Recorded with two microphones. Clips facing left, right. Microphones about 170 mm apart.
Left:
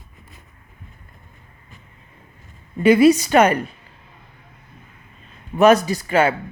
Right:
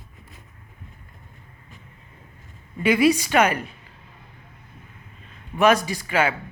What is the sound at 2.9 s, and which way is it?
Speech, 35° left (ahead or behind).